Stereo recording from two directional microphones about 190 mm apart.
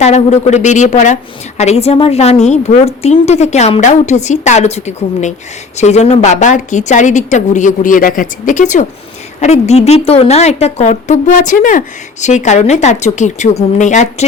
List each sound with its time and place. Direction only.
0.0 s a woman's voice: 35° left (ahead or behind)